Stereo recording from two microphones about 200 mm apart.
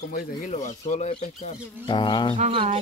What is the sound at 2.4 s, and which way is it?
Speech, 25° right (ahead or behind).